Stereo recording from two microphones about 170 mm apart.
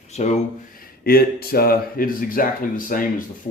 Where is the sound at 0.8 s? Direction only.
60° left (ahead or behind).